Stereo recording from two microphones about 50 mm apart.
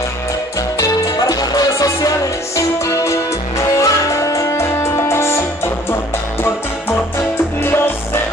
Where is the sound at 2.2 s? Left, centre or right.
Left.